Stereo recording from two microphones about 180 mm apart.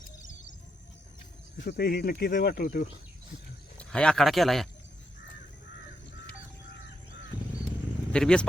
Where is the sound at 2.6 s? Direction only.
40° left (ahead or behind).